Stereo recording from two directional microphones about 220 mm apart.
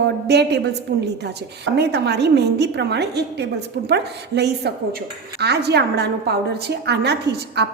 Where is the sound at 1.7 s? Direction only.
50° right (ahead or behind).